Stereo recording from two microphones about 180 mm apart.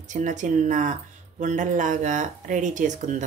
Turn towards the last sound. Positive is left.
turn(degrees=-45)  # may be behind; listen again after turning